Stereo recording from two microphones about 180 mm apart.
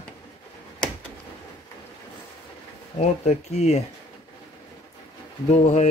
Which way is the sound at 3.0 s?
40° left (ahead or behind).